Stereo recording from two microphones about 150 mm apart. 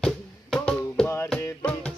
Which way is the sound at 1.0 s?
20° left (ahead or behind).